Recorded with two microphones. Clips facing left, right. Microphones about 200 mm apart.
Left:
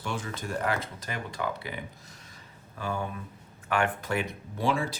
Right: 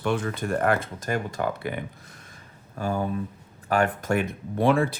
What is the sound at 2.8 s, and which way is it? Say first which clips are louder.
Speech: right 6 dB; 40° right (ahead or behind).